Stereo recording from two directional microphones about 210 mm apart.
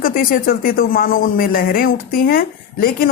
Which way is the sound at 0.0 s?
45° left (ahead or behind).